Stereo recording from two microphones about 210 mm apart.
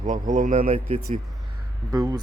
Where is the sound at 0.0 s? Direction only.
35° right (ahead or behind).